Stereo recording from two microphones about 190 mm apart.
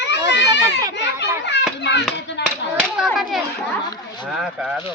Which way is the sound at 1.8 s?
65° left (ahead or behind).